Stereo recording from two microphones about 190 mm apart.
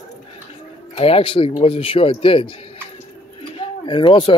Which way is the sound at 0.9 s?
30° left (ahead or behind).